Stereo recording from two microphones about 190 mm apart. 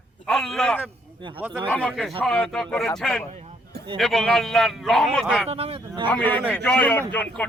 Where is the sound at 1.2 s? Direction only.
25° right (ahead or behind).